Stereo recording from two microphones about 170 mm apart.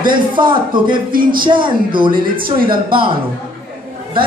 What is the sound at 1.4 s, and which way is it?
A man's voice, 30° right (ahead or behind).